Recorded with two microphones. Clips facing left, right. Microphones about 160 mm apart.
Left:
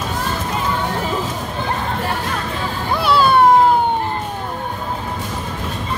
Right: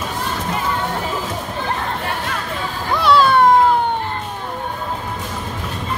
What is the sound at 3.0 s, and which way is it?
Music, 5° left (ahead or behind).